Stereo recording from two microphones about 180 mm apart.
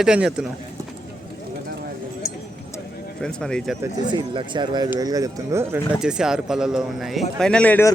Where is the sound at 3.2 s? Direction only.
5° left (ahead or behind).